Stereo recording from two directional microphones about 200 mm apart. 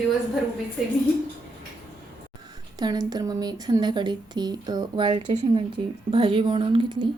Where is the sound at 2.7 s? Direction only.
20° right (ahead or behind).